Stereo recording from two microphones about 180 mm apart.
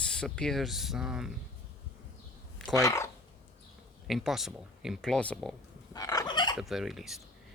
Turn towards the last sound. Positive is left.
turn(degrees=0)  # may be behind; listen again after turning